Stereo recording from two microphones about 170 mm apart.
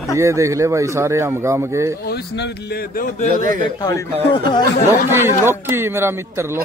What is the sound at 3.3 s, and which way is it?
Speech, 55° right (ahead or behind).